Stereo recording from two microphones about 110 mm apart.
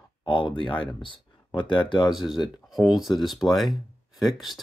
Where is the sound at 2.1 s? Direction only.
Centre (ahead or behind).